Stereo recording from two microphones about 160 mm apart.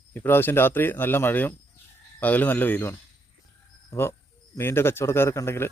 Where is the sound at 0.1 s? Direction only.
15° left (ahead or behind).